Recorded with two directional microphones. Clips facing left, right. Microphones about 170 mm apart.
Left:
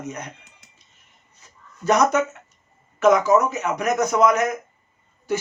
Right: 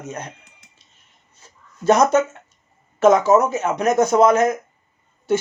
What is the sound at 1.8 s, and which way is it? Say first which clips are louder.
Speech: right 3 dB; 30° right (ahead or behind).